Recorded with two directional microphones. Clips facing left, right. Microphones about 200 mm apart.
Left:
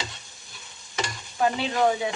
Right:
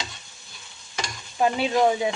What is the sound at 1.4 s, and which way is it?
Speech, 15° right (ahead or behind).